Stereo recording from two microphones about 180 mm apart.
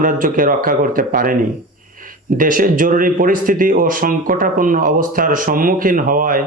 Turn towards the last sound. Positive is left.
turn(degrees=-50)  # may be behind; listen again after turning